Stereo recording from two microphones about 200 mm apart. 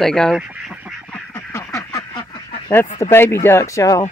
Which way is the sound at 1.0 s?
10° left (ahead or behind).